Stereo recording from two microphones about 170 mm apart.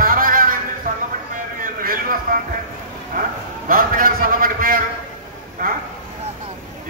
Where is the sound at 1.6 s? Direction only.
55° right (ahead or behind).